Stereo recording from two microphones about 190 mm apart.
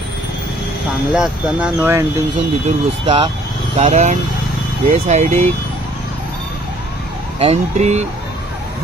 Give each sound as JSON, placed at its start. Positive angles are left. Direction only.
{"t": 1.1, "sound": "speech", "side_deg": -5}
{"t": 2.6, "sound": "speech", "side_deg": -30}
{"t": 7.3, "sound": "speech", "side_deg": -35}